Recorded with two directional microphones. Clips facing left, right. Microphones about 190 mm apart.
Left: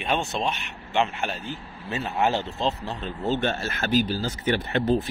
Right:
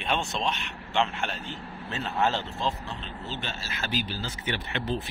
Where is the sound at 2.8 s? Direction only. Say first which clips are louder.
Left 10 dB; 45° left (ahead or behind).